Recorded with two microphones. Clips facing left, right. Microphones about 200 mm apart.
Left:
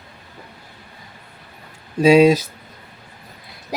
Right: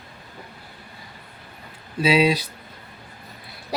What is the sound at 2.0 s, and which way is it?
Speech, 45° left (ahead or behind).